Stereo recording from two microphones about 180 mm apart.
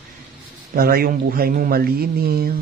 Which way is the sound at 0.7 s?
55° right (ahead or behind).